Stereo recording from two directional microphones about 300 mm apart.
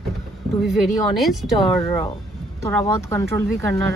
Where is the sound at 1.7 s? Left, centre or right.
Centre.